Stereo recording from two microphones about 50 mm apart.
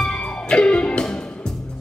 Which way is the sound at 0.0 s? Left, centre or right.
Left.